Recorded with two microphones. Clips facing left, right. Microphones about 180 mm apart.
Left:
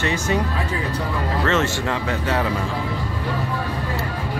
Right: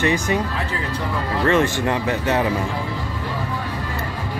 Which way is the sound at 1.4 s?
15° right (ahead or behind).